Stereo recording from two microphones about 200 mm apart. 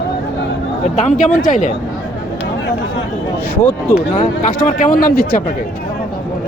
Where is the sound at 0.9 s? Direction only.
40° left (ahead or behind).